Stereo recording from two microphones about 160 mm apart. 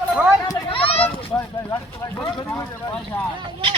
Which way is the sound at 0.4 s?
35° left (ahead or behind).